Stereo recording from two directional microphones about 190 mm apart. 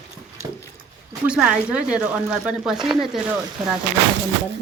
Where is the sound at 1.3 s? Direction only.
5° right (ahead or behind).